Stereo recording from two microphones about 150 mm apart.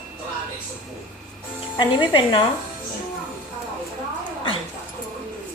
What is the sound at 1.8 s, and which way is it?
Speech, 30° left (ahead or behind).